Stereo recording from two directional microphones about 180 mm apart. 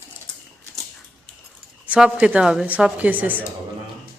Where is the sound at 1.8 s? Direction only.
10° right (ahead or behind).